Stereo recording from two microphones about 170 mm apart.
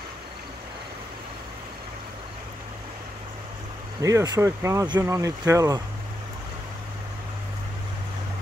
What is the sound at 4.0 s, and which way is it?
Speech, 15° right (ahead or behind).